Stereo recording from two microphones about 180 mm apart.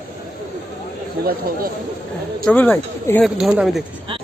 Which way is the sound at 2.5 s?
10° left (ahead or behind).